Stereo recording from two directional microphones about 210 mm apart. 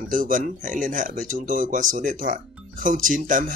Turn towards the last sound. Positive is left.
turn(degrees=-40)  # may be behind; listen again after turning